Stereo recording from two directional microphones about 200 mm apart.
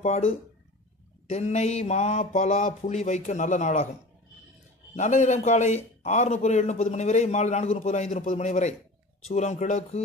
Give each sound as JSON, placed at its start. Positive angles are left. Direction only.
{"t": 0.0, "sound": "a man's voice", "side_deg": 30}
{"t": 4.9, "sound": "a man's voice", "side_deg": 35}